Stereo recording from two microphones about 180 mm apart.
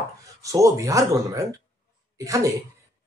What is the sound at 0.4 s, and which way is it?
Speech, 20° right (ahead or behind).